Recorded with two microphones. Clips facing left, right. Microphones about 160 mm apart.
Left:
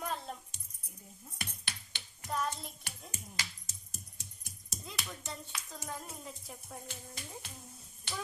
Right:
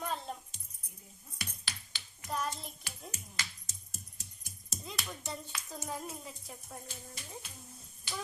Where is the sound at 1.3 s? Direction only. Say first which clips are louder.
Even; 55° left (ahead or behind).